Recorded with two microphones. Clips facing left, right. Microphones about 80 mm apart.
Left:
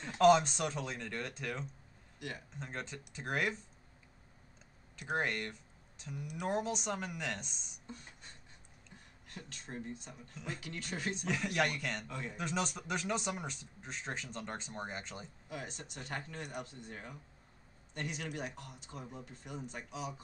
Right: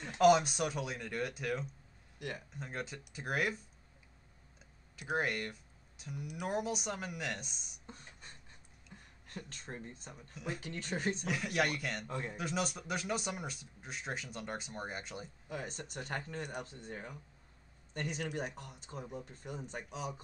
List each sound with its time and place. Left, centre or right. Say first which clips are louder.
0.2 s speech: even; centre
2.1 s speech: right 2 dB; right
2.6 s speech: right 1 dB; centre
4.9 s speech: right 1 dB; centre
7.8 s a sound: left 3 dB; right
9.3 s speech: right 1 dB; right
11.2 s speech: left 3 dB; centre
12.1 s speech: right 3 dB; right
12.4 s speech: left 2 dB; centre
15.5 s speech: right 3 dB; right